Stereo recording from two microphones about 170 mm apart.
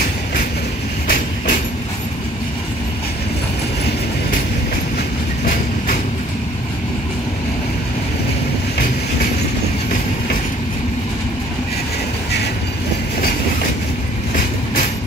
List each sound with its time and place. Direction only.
1.0 s train: 60° left (ahead or behind)